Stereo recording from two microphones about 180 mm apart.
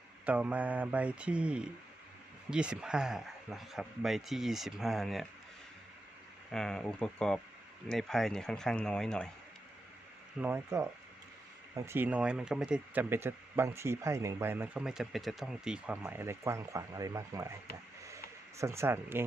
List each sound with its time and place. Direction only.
0.3 s speech: 10° right (ahead or behind)
6.5 s speech: 5° left (ahead or behind)
10.4 s speech: 15° right (ahead or behind)
18.0 s a sound: 15° right (ahead or behind)